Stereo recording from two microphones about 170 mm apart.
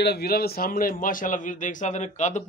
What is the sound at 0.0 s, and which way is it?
A man's voice, 70° left (ahead or behind).